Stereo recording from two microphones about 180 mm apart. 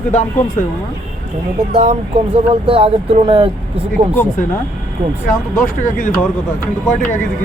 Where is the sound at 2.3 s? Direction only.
30° right (ahead or behind).